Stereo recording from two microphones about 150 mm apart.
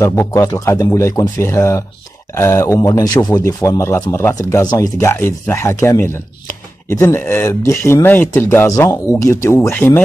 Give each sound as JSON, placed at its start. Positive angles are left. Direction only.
{"t": 0.0, "sound": "speech", "side_deg": 20}